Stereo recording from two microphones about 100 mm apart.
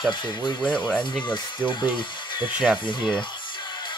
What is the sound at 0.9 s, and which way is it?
Speech, 15° left (ahead or behind).